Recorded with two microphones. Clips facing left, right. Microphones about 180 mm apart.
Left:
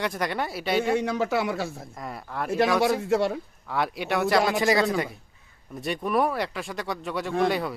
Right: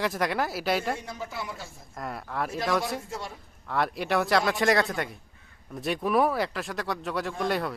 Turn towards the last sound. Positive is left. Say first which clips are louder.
# left 4 dB
turn(degrees=0)  # may be behind; listen again after turning